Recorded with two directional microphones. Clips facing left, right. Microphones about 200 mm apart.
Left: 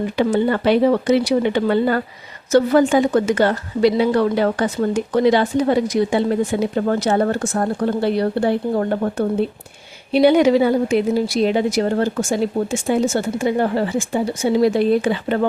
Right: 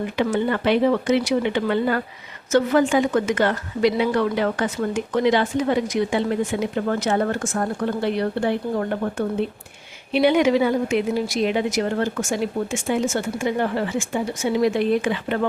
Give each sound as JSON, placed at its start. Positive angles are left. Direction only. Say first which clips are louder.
{"t": 0.2, "sound": "a woman's voice", "louder": "left 4 dB", "side_deg": 35}